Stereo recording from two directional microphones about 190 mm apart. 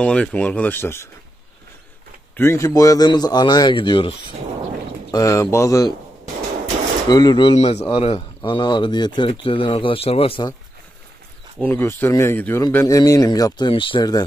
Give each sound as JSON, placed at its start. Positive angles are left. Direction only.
{"t": 0.0, "sound": "a man's voice", "side_deg": 5}
{"t": 2.3, "sound": "a man's voice", "side_deg": 15}
{"t": 7.1, "sound": "a man's voice", "side_deg": 20}
{"t": 11.5, "sound": "a man's voice", "side_deg": 10}